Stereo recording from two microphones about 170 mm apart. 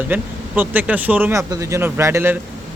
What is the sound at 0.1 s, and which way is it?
Speech, 10° right (ahead or behind).